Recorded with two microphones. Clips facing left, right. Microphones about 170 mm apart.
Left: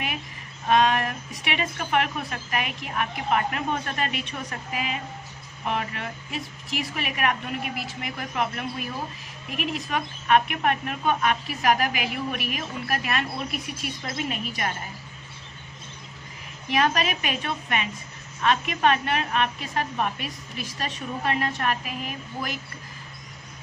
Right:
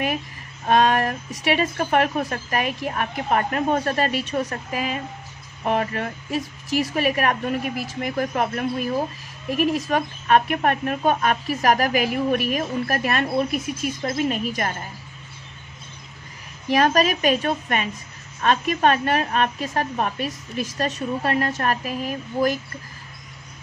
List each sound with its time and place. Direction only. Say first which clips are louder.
0.7 s a woman's voice: right 3 dB; 45° right (ahead or behind)
16.6 s a woman's voice: right 5 dB; 40° right (ahead or behind)